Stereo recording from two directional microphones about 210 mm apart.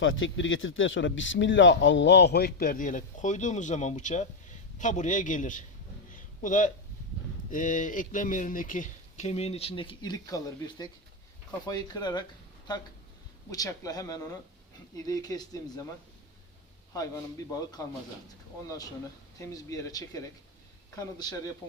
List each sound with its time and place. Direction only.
0.0 s speech: 65° left (ahead or behind); by 5.6 s 40° left (ahead or behind)
6.1 s a sound: 40° left (ahead or behind)
7.5 s speech: 40° left (ahead or behind); by 12.2 s 20° left (ahead or behind)
13.5 s speech: 15° left (ahead or behind)
17.8 s speech: 15° left (ahead or behind)
19.4 s speech: 15° left (ahead or behind)